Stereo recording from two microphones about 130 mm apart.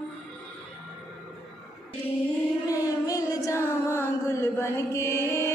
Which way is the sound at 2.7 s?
25° left (ahead or behind).